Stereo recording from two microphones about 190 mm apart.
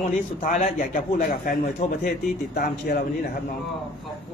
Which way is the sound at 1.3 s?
50° left (ahead or behind).